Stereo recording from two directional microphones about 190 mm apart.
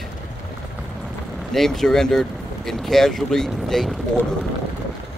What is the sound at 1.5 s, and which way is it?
Speech, centre (ahead or behind).